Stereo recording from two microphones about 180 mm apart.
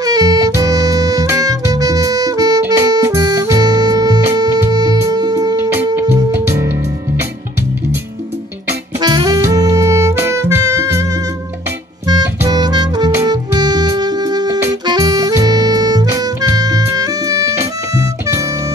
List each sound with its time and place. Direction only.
0.0 s music: 20° right (ahead or behind)
8.6 s music: 20° right (ahead or behind)
12.1 s music: 20° right (ahead or behind)